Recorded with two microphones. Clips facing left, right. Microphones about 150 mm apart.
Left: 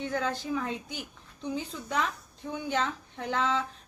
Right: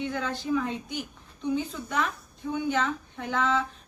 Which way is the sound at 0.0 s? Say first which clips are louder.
Even; 40° left (ahead or behind).